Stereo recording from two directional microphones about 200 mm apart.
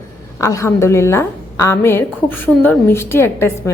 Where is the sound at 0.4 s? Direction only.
15° left (ahead or behind).